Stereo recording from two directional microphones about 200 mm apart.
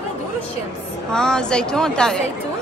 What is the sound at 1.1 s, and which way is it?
A woman's voice, 5° left (ahead or behind).